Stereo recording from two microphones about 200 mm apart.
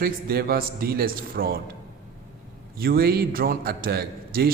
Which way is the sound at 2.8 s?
50° right (ahead or behind).